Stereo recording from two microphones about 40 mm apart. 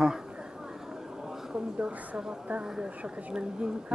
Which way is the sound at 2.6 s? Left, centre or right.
Centre.